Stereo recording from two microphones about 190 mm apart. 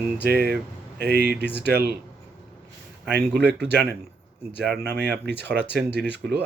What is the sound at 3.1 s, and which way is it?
Speech, 60° right (ahead or behind).